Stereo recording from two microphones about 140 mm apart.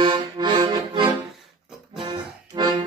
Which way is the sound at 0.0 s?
35° right (ahead or behind).